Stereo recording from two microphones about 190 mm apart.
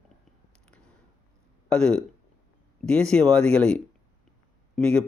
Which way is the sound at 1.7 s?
5° left (ahead or behind).